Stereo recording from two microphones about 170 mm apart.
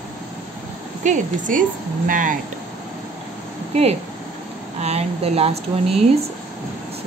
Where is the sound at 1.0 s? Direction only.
45° right (ahead or behind).